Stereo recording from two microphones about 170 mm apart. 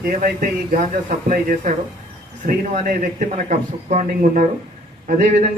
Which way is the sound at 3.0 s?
45° right (ahead or behind).